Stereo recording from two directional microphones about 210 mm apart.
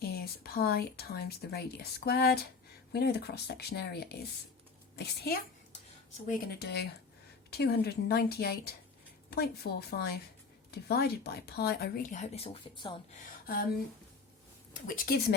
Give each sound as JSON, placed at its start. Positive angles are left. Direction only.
{"t": 0.0, "sound": "speech", "side_deg": 50}
{"t": 9.9, "sound": "speech", "side_deg": 50}
{"t": 13.2, "sound": "a sound", "side_deg": 45}
{"t": 14.7, "sound": "speech", "side_deg": 40}